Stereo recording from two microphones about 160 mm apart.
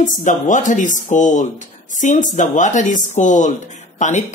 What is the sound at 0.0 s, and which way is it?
Speech, 55° left (ahead or behind).